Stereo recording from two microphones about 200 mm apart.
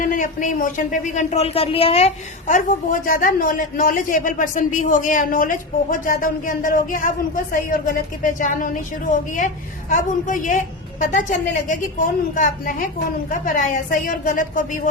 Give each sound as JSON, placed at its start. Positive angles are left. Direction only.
{"t": 0.0, "sound": "a man's voice", "side_deg": 40}
{"t": 9.9, "sound": "a man's voice", "side_deg": 40}